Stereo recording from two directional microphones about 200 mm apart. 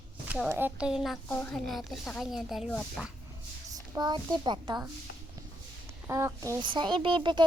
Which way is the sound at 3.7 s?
20° right (ahead or behind).